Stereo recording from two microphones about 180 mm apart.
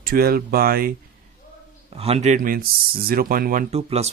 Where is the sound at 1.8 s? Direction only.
35° right (ahead or behind); by 3.6 s 50° right (ahead or behind).